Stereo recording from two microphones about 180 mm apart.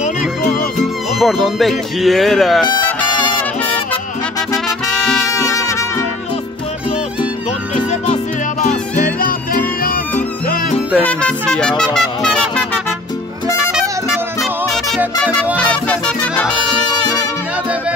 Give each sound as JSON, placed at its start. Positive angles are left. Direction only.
{"t": 0.4, "sound": "music", "side_deg": 55}
{"t": 1.2, "sound": "speech", "side_deg": 0}
{"t": 4.9, "sound": "music", "side_deg": 0}
{"t": 5.5, "sound": "music", "side_deg": 15}
{"t": 7.7, "sound": "music", "side_deg": 40}
{"t": 11.0, "sound": "music", "side_deg": 5}